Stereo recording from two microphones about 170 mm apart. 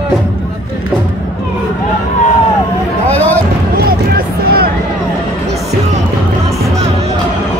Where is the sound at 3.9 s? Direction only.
60° right (ahead or behind).